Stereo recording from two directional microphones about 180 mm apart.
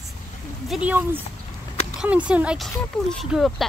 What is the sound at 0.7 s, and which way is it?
Speech, 5° right (ahead or behind).